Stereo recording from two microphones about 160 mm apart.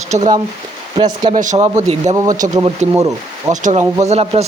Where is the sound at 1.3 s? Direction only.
50° right (ahead or behind).